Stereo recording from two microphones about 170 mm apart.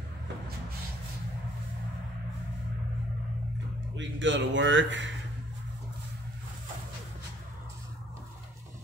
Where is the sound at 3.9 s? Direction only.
90° right.